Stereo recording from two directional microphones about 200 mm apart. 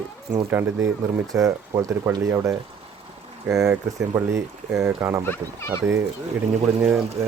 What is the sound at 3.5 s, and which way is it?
Speech, centre (ahead or behind).